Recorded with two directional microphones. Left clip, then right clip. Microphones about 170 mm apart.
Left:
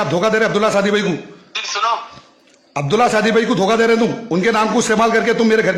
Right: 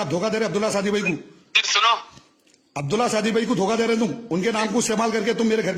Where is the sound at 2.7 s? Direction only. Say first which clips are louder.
Left 8 dB; 40° right (ahead or behind).